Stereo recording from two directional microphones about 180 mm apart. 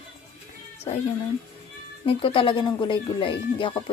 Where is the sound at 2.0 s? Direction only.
30° left (ahead or behind).